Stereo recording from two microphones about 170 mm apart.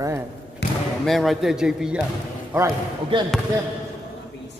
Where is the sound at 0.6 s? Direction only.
90° left.